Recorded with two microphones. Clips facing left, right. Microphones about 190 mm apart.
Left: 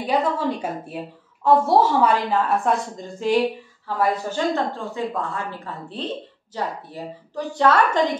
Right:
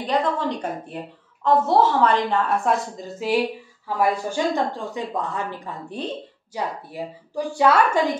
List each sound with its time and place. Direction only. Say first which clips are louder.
0.0 s a woman's voice: left 1 dB; 10° left (ahead or behind); by 8.2 s 10° right (ahead or behind)